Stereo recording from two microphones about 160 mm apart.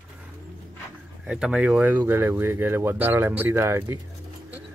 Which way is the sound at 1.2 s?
5° right (ahead or behind).